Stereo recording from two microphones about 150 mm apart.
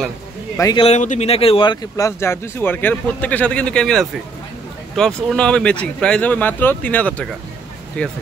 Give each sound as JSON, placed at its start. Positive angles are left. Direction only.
{"t": 0.6, "sound": "speech", "side_deg": 25}
{"t": 0.8, "sound": "speech", "side_deg": 50}